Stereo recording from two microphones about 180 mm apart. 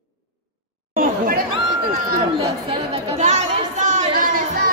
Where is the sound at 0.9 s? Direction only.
55° right (ahead or behind).